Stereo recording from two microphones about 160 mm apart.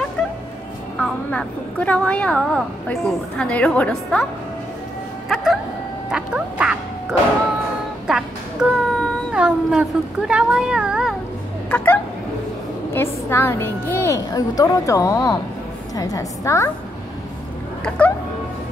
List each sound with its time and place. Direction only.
0.2 s music: 10° left (ahead or behind)
0.9 s a woman's voice: 5° left (ahead or behind)
5.3 s music: centre (ahead or behind)
6.0 s speech: 5° right (ahead or behind)
8.6 s child singing: 10° right (ahead or behind)
9.3 s speech: 5° right (ahead or behind)
11.7 s a woman's voice: 10° left (ahead or behind)
17.8 s speech: 10° left (ahead or behind)